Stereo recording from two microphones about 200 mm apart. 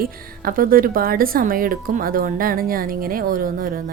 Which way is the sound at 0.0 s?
45° right (ahead or behind).